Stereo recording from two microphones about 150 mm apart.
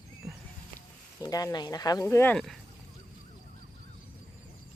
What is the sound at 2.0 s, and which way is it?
Speech, 15° left (ahead or behind).